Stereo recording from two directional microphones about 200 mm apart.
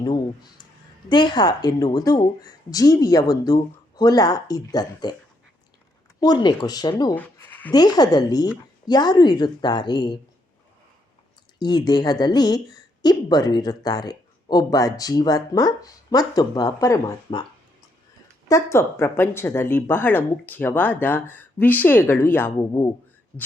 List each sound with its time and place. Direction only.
0.0 s speech: 20° left (ahead or behind)
6.1 s speech: 20° left (ahead or behind)
7.7 s speech: 20° left (ahead or behind)
11.6 s speech: 20° left (ahead or behind)
18.4 s speech: 15° left (ahead or behind)